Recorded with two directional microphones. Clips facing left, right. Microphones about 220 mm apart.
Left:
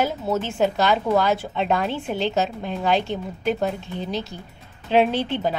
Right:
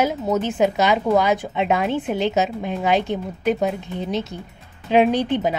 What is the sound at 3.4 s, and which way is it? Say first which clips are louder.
Speech: right 3 dB; centre (ahead or behind).